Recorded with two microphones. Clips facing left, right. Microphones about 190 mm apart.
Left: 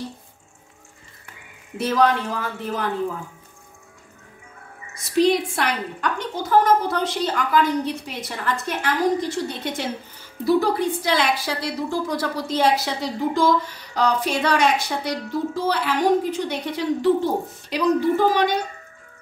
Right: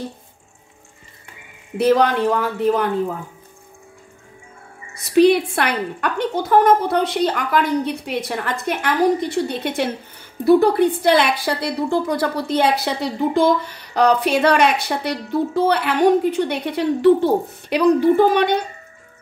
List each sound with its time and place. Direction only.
1.8 s a woman's voice: 65° right (ahead or behind)
5.1 s a woman's voice: 65° right (ahead or behind)